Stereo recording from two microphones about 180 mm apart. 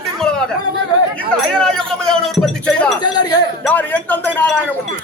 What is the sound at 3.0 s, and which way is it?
Chink, 25° left (ahead or behind).